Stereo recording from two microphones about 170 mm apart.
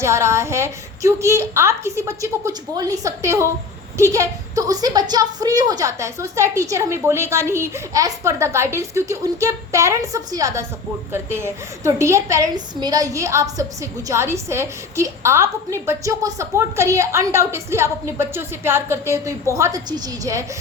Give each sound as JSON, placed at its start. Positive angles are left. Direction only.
{"t": 0.0, "sound": "a woman's voice", "side_deg": -15}